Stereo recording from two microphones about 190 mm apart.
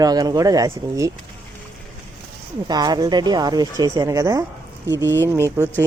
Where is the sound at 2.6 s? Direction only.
20° right (ahead or behind).